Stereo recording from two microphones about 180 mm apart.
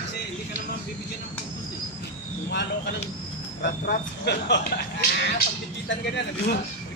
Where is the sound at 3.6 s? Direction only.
55° left (ahead or behind).